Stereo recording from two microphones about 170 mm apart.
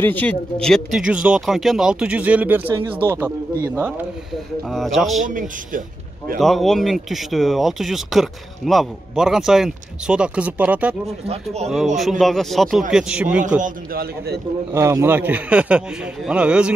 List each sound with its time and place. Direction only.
0.0 s speech: 10° left (ahead or behind); by 3.9 s 10° right (ahead or behind)
4.6 s speech: centre (ahead or behind)
5.2 s a man's voice: 50° right (ahead or behind)
6.3 s speech: centre (ahead or behind)
11.2 s speech: 40° right (ahead or behind)
11.7 s speech: centre (ahead or behind)
13.6 s a man's voice: 65° right (ahead or behind)
14.7 s speech: 15° right (ahead or behind)